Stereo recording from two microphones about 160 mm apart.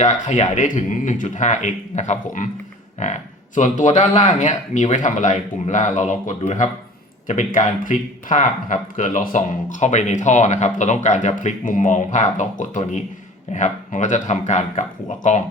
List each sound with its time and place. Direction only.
0.0 s speech: 45° left (ahead or behind)